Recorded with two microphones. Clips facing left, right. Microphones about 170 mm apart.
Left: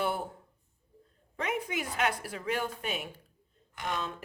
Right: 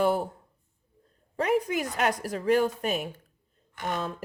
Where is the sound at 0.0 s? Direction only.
40° right (ahead or behind).